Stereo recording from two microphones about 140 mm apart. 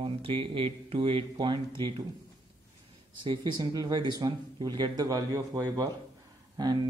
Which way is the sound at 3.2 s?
30° right (ahead or behind).